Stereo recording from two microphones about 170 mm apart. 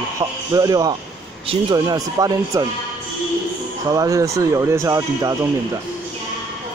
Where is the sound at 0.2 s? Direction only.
20° right (ahead or behind).